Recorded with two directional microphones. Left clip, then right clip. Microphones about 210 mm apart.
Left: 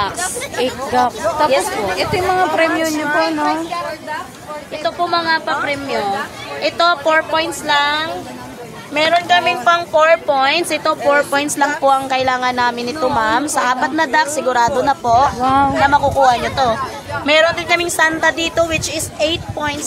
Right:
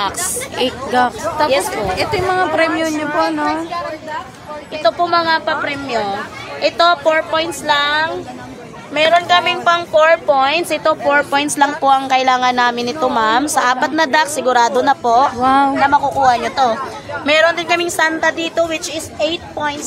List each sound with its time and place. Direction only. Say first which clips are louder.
0.6 s speech: right 1 dB; 15° right (ahead or behind)
2.7 s a man's voice: left 1 dB; 35° left (ahead or behind)
3.2 s speech: right 1 dB; 5° left (ahead or behind)
4.8 s a woman's voice: right 3 dB; 35° right (ahead or behind); by 15.7 s 20° right (ahead or behind)
15.8 s a woman's voice: left 1 dB; 5° right (ahead or behind)